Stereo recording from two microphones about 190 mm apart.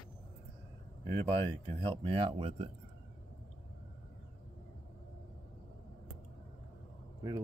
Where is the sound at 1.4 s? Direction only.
30° right (ahead or behind).